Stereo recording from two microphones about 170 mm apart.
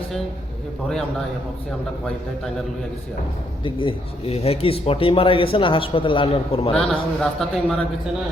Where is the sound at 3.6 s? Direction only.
30° left (ahead or behind).